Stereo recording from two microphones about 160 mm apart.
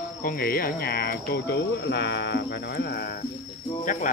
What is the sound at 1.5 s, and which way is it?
Speech, 90° left.